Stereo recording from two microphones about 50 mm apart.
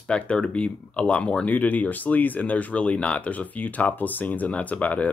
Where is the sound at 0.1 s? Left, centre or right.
Left.